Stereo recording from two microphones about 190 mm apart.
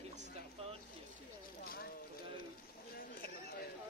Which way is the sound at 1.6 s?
50° left (ahead or behind).